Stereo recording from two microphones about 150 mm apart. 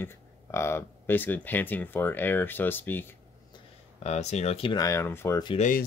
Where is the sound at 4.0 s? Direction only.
50° left (ahead or behind).